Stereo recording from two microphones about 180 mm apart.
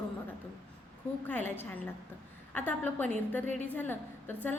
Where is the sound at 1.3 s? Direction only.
10° left (ahead or behind).